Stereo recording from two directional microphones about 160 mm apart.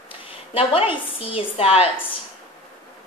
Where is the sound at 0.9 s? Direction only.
35° left (ahead or behind).